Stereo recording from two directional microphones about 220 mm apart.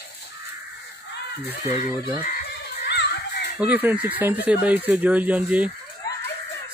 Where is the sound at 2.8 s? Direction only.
50° left (ahead or behind).